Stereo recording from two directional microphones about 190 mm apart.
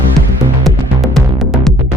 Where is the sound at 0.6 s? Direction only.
Centre (ahead or behind).